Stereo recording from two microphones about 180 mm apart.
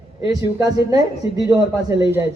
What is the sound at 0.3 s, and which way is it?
A man's voice, 20° right (ahead or behind).